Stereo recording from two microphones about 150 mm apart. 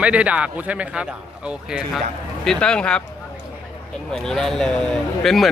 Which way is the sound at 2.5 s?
5° left (ahead or behind).